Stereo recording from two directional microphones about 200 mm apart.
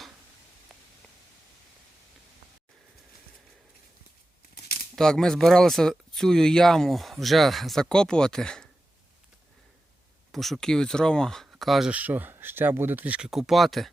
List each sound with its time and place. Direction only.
4.5 s crumpling: 50° left (ahead or behind)
4.9 s speech: centre (ahead or behind)
10.3 s speech: centre (ahead or behind)